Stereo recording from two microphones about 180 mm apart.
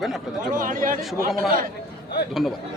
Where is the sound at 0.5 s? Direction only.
50° right (ahead or behind).